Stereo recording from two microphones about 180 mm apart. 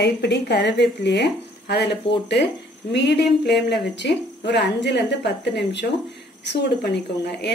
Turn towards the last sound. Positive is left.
turn(degrees=70)  # may be behind; listen again after turning